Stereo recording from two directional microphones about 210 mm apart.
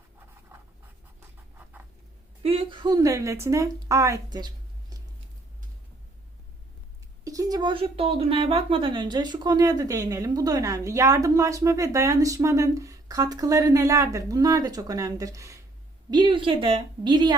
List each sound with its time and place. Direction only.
0.5 s writing: 10° right (ahead or behind)
2.4 s speech: 25° right (ahead or behind)
7.3 s a woman's voice: 15° right (ahead or behind)